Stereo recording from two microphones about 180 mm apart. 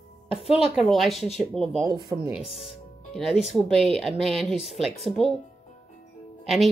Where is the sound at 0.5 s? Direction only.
Centre (ahead or behind).